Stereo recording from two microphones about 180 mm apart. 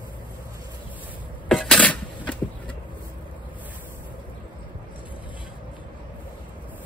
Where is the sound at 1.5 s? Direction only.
Centre (ahead or behind).